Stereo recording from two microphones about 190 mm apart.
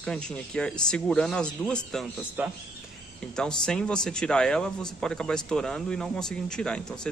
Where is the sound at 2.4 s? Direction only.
10° right (ahead or behind).